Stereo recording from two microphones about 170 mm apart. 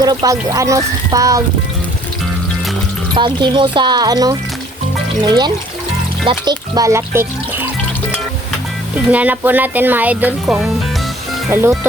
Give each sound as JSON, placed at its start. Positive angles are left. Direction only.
{"t": 0.0, "sound": "speech", "side_deg": -20}
{"t": 3.2, "sound": "speech", "side_deg": -25}
{"t": 9.0, "sound": "speech", "side_deg": -10}